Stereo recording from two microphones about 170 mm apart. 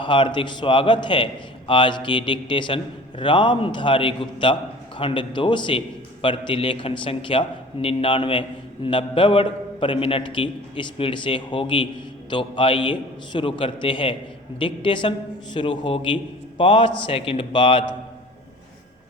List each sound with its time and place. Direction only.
0.0 s a man's voice: 30° left (ahead or behind)